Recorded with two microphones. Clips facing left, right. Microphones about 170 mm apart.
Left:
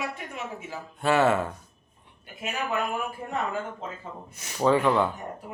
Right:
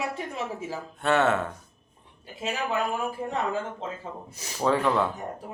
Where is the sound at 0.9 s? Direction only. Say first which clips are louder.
Left 1 dB; centre (ahead or behind).